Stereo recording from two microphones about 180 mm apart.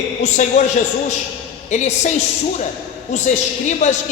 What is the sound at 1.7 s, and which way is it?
Speech, 40° left (ahead or behind).